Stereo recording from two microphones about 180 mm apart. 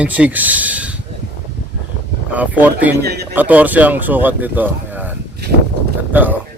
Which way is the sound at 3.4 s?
10° right (ahead or behind).